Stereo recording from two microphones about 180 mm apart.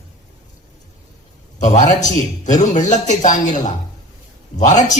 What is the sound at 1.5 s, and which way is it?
A man's voice, 40° left (ahead or behind).